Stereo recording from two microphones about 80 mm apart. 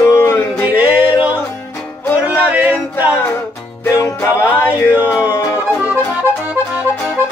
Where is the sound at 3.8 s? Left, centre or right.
Left.